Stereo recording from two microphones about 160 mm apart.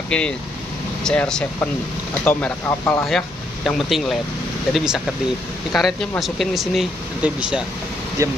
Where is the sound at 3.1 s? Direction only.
Centre (ahead or behind).